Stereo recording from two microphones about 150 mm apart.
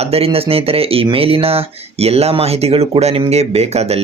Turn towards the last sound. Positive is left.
turn(degrees=-45)  # may be behind; listen again after turning